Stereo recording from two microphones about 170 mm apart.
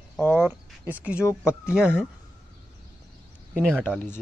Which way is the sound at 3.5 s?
5° left (ahead or behind).